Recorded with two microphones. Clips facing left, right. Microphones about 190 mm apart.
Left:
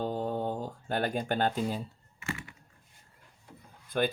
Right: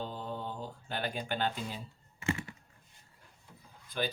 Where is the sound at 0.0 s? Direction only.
45° left (ahead or behind).